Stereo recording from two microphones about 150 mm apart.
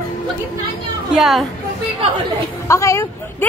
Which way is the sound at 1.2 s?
Centre (ahead or behind).